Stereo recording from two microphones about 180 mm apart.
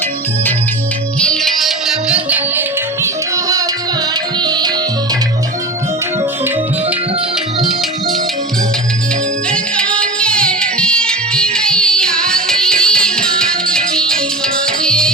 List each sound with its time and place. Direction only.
1.3 s music: centre (ahead or behind); by 4.7 s 25° right (ahead or behind)
9.5 s music: 5° left (ahead or behind)